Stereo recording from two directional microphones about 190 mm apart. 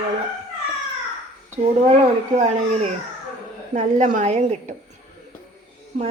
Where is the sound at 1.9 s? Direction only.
35° right (ahead or behind).